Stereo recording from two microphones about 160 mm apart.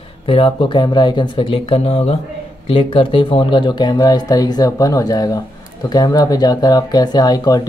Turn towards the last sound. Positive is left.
turn(degrees=25)  # may be behind; listen again after turning